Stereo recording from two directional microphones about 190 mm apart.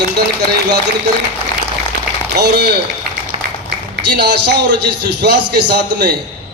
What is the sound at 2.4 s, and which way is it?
Speech, 60° right (ahead or behind).